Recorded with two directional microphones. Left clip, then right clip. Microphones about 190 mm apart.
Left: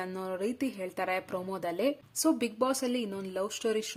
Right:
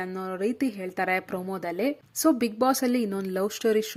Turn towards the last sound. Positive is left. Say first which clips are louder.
# right 7 dB
turn(degrees=-20)  # may be behind; listen again after turning